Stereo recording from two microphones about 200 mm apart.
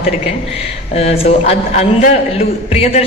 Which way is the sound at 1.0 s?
30° left (ahead or behind).